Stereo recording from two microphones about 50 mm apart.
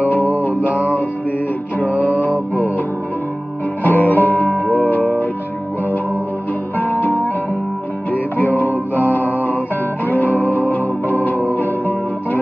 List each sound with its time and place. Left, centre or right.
0.4 s music: left
1.8 s music: left
3.8 s music: left
6.8 s music: left